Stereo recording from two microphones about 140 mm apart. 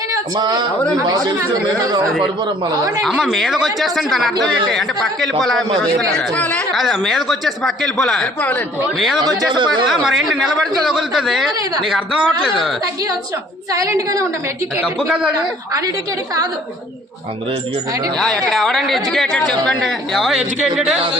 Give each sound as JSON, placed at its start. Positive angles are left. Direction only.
{"t": 0.1, "sound": "speech", "side_deg": -25}
{"t": 3.0, "sound": "a woman's voice", "side_deg": 0}
{"t": 8.4, "sound": "speech", "side_deg": 15}
{"t": 9.0, "sound": "a woman's voice", "side_deg": 0}
{"t": 9.2, "sound": "speech", "side_deg": -35}
{"t": 9.8, "sound": "a woman's voice", "side_deg": 0}
{"t": 13.7, "sound": "speech", "side_deg": -25}
{"t": 15.0, "sound": "a man's voice", "side_deg": -5}
{"t": 18.2, "sound": "a woman's voice", "side_deg": 5}